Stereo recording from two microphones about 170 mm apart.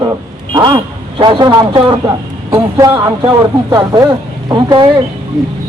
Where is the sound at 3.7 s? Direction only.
20° right (ahead or behind).